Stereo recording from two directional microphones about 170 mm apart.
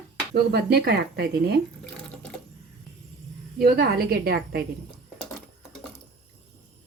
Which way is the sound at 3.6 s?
65° right (ahead or behind).